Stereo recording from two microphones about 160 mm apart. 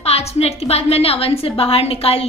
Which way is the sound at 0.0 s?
40° left (ahead or behind).